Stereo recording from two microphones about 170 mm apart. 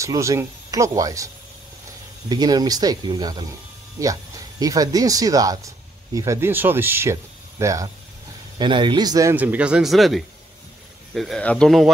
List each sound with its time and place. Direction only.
0.0 s speech: 20° right (ahead or behind)
9.3 s speech: 10° right (ahead or behind)